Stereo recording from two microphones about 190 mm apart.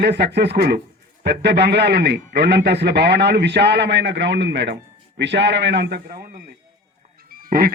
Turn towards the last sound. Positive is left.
turn(degrees=-50)  # may be behind; listen again after turning